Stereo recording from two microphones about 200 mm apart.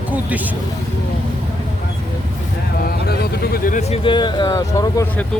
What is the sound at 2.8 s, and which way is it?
Speech, 50° left (ahead or behind).